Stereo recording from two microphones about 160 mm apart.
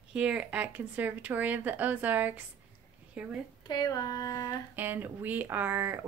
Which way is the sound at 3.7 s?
25° left (ahead or behind).